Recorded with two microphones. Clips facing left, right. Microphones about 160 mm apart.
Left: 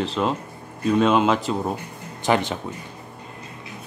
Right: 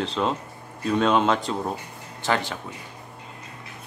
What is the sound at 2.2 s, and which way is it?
Speech, 15° left (ahead or behind).